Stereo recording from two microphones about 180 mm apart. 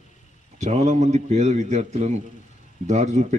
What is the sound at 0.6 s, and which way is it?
Speech, 40° right (ahead or behind).